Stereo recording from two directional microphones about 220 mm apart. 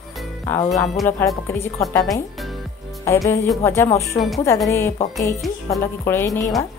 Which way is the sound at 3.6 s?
10° left (ahead or behind).